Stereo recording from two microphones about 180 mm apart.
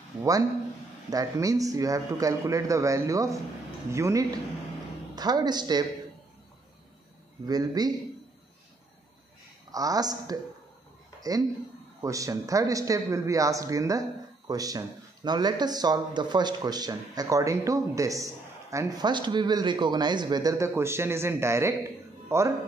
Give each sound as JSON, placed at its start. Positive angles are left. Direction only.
{"t": 0.2, "sound": "a man's voice", "side_deg": -20}
{"t": 7.4, "sound": "speech", "side_deg": -20}
{"t": 9.7, "sound": "speech", "side_deg": -20}
{"t": 11.1, "sound": "a sound", "side_deg": -20}
{"t": 12.0, "sound": "a man's voice", "side_deg": -20}